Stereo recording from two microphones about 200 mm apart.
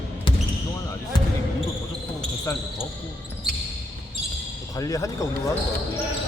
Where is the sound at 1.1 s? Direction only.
20° left (ahead or behind).